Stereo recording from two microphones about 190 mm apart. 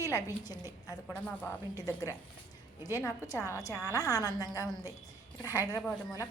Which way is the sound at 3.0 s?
15° left (ahead or behind).